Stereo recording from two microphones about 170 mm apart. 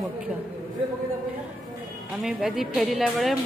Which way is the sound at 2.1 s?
Centre (ahead or behind).